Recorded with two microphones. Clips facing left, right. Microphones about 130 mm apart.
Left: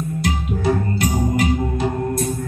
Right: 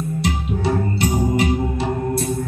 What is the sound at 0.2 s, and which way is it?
Music, 30° right (ahead or behind).